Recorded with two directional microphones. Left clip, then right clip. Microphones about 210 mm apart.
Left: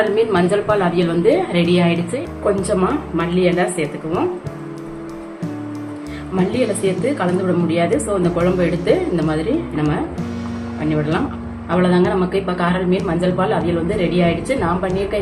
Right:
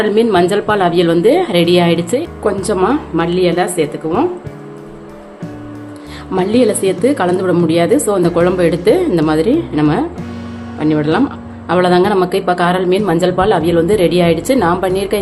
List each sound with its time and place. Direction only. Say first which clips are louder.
0.3 s a woman's voice: right 4 dB; 40° right (ahead or behind)
6.5 s a woman's voice: right 7 dB; 50° right (ahead or behind)